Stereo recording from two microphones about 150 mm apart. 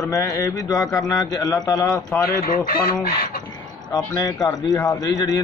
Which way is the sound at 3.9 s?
25° left (ahead or behind).